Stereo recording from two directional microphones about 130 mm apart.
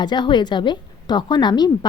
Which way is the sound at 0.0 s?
35° left (ahead or behind).